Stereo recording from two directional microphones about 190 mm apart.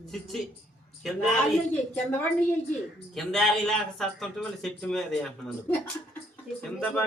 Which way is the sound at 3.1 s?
Centre (ahead or behind).